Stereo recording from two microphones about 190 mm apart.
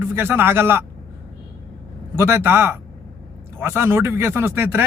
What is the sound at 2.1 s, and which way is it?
Speech, 10° right (ahead or behind).